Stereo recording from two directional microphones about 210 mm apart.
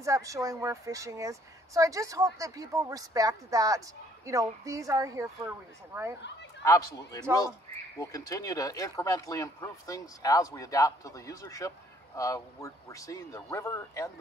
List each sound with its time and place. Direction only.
0.0 s a woman's voice: 15° right (ahead or behind)
6.6 s speech: 15° left (ahead or behind)